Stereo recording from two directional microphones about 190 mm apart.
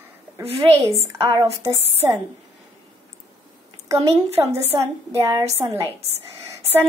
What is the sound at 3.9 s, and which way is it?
A woman's voice, 15° right (ahead or behind).